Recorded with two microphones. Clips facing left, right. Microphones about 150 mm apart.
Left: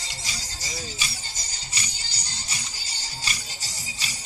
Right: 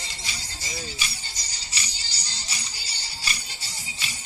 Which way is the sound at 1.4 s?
50° left (ahead or behind).